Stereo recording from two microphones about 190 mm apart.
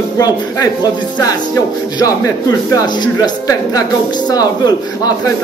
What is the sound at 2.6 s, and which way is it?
Speech, 20° left (ahead or behind).